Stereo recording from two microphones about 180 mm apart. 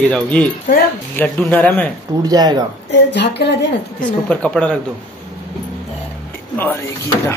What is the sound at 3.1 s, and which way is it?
Speech, 70° left (ahead or behind).